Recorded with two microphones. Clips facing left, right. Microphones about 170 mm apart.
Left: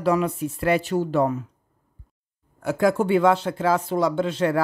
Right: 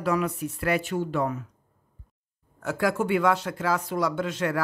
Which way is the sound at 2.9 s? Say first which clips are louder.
Left 5 dB; 30° left (ahead or behind).